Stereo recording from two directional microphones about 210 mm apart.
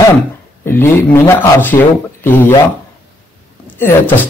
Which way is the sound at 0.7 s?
10° left (ahead or behind).